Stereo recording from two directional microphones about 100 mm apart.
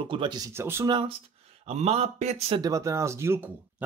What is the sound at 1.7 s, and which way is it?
Speech, 90° right.